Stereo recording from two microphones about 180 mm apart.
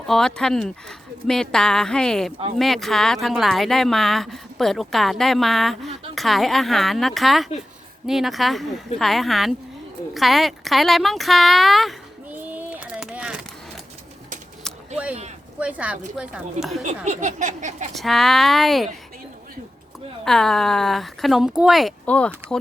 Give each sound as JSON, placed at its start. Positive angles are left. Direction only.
{"t": 0.1, "sound": "speech", "side_deg": 5}
{"t": 10.2, "sound": "a sound", "side_deg": 0}
{"t": 15.5, "sound": "speech", "side_deg": -5}
{"t": 17.1, "sound": "speech", "side_deg": -45}
{"t": 17.9, "sound": "speech", "side_deg": 0}
{"t": 20.2, "sound": "speech", "side_deg": 0}